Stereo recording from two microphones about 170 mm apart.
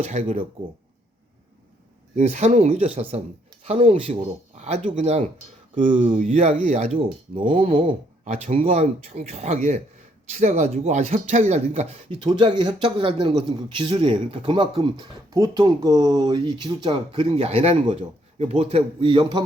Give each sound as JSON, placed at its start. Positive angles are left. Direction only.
{"t": 0.0, "sound": "speech", "side_deg": -40}
{"t": 2.1, "sound": "speech", "side_deg": -40}
{"t": 6.6, "sound": "speech", "side_deg": -45}